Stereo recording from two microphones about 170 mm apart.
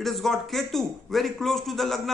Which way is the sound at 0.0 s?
Centre (ahead or behind).